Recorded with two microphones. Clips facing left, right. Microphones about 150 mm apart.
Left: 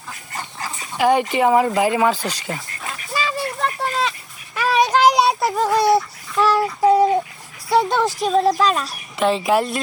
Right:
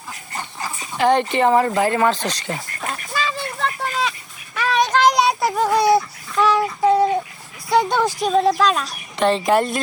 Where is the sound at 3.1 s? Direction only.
5° left (ahead or behind).